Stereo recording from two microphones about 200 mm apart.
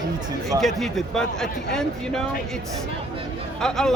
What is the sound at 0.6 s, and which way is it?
Speech, centre (ahead or behind).